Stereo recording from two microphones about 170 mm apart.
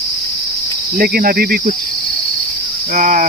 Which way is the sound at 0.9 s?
60° right (ahead or behind).